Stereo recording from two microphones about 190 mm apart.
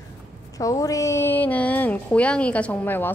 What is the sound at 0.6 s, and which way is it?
A woman's voice, 15° left (ahead or behind).